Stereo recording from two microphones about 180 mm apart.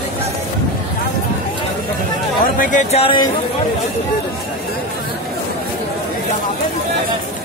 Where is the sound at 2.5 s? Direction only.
40° left (ahead or behind).